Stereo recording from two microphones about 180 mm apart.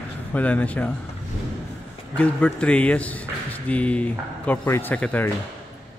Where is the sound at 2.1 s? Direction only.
5° left (ahead or behind).